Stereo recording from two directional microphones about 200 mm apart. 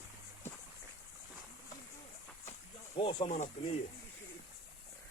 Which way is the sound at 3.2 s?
35° left (ahead or behind).